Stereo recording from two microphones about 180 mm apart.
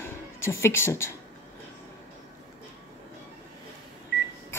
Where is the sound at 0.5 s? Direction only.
15° left (ahead or behind).